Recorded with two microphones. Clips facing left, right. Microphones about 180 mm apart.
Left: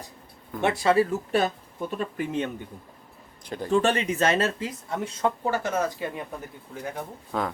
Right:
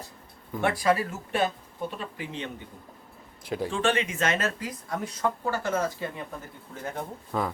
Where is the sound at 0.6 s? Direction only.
25° left (ahead or behind).